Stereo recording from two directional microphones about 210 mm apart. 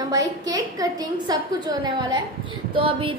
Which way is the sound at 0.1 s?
15° right (ahead or behind).